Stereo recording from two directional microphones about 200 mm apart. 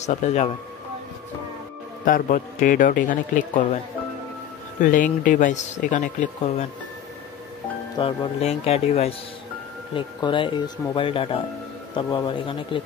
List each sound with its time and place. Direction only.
0.0 s speech: 35° left (ahead or behind)
2.0 s speech: 45° left (ahead or behind)
4.8 s speech: 40° left (ahead or behind)
8.0 s speech: 30° left (ahead or behind)